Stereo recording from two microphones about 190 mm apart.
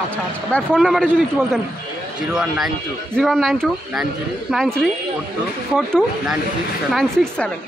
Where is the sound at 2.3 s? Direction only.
5° right (ahead or behind).